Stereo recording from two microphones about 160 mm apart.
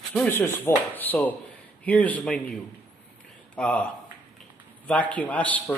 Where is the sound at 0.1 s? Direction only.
5° left (ahead or behind).